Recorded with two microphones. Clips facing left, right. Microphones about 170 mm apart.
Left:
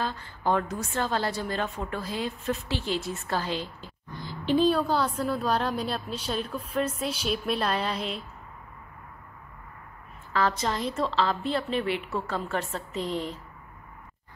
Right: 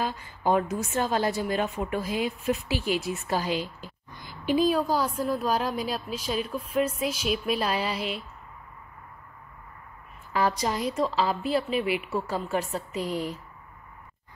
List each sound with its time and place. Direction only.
0.0 s a woman's voice: 15° right (ahead or behind)
10.3 s a woman's voice: 15° right (ahead or behind)